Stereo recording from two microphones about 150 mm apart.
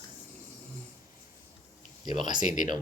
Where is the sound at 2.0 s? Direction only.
30° right (ahead or behind).